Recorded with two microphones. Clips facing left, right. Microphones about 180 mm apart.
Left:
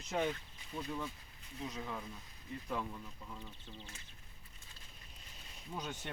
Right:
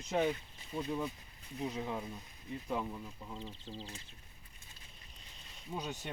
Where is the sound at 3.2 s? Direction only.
25° right (ahead or behind).